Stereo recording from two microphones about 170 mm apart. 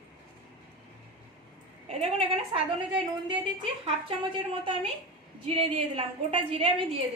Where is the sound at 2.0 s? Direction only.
35° right (ahead or behind).